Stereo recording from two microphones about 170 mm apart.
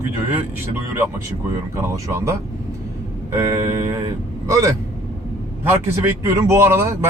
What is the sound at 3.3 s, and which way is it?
Speech, 15° right (ahead or behind).